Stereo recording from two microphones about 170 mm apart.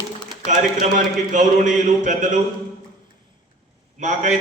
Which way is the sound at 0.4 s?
45° right (ahead or behind).